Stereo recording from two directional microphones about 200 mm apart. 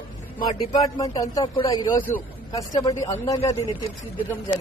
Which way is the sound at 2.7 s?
20° left (ahead or behind).